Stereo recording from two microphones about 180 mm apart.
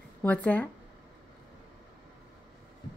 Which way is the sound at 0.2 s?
10° left (ahead or behind).